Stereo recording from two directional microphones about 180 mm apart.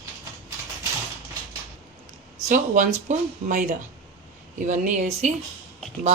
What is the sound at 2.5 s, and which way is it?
Speech, 45° right (ahead or behind).